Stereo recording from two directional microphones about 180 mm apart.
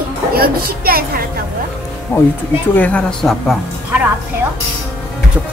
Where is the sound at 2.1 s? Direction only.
10° left (ahead or behind).